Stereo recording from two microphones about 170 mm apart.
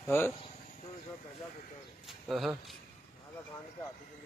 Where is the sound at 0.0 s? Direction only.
10° left (ahead or behind).